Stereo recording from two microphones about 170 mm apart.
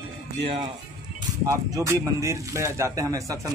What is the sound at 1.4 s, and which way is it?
Speech, 20° right (ahead or behind).